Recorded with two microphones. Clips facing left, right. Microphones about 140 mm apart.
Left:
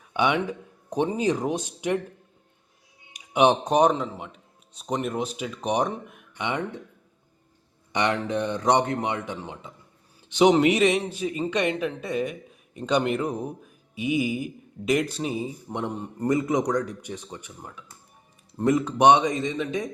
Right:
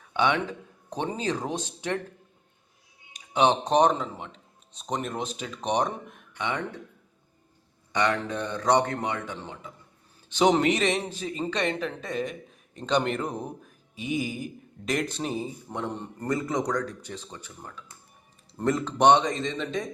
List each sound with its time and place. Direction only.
0.1 s a man's voice: 10° left (ahead or behind)
3.1 s speech: 15° left (ahead or behind)
6.4 s a man's voice: 20° left (ahead or behind)
7.9 s a man's voice: 20° left (ahead or behind)
16.0 s a man's voice: 15° left (ahead or behind)